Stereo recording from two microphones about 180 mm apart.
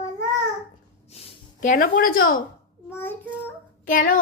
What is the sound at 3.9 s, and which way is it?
Speech, 50° left (ahead or behind).